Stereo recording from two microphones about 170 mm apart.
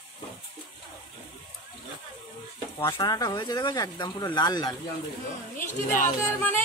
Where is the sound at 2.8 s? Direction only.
20° left (ahead or behind).